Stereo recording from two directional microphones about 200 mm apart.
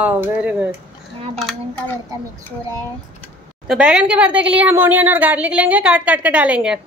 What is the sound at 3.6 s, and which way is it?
A woman's voice, 5° right (ahead or behind).